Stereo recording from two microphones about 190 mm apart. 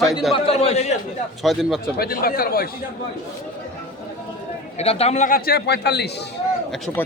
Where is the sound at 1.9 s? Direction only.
50° left (ahead or behind).